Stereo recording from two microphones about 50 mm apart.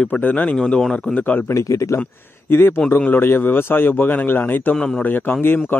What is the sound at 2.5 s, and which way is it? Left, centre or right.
Speech, left.